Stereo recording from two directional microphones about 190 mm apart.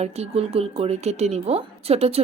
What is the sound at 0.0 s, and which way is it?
A woman's voice, 35° right (ahead or behind).